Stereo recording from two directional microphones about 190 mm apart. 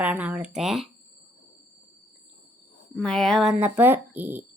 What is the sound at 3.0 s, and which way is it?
A woman's voice, 5° left (ahead or behind).